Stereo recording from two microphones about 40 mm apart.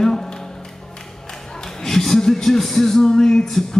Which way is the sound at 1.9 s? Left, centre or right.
Centre.